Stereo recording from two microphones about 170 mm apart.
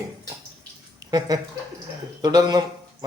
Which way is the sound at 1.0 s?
20° right (ahead or behind).